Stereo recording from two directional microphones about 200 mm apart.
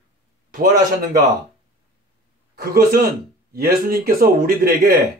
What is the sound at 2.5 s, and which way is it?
Speech, 50° right (ahead or behind).